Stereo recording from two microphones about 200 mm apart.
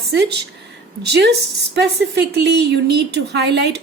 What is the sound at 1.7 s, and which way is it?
A woman's voice, 55° right (ahead or behind).